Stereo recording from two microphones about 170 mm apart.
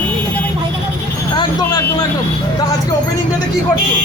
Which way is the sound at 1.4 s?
25° left (ahead or behind).